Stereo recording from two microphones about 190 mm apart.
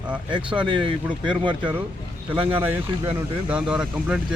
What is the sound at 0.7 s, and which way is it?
Speech, 25° right (ahead or behind).